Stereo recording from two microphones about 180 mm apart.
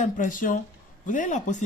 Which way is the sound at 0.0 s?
45° left (ahead or behind).